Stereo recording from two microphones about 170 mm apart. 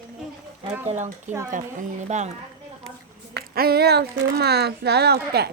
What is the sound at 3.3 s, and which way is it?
Speech, 65° right (ahead or behind).